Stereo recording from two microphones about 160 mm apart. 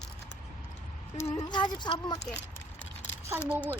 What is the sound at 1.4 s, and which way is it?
Speech, 25° left (ahead or behind).